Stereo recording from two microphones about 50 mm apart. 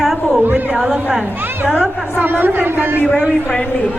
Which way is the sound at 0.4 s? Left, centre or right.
Right.